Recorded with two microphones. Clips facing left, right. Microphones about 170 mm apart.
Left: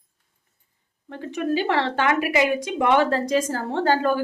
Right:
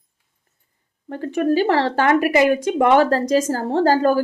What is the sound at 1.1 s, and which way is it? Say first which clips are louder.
Speech: right 6 dB; 50° right (ahead or behind).